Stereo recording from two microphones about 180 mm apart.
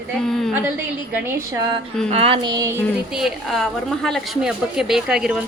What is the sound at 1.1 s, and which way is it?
Speech, 10° right (ahead or behind).